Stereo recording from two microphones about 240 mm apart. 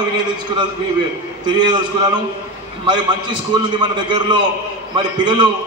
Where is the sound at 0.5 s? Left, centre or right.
Centre.